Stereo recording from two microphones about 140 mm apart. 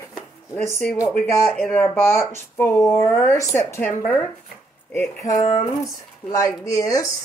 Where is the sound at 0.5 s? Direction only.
15° left (ahead or behind).